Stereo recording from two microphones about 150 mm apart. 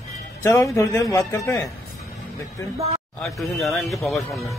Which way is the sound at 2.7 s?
45° right (ahead or behind).